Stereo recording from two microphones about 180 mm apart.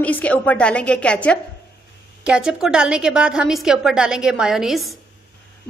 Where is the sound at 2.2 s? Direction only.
5° right (ahead or behind).